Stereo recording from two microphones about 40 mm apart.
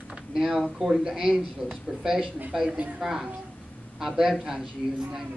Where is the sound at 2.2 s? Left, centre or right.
Right.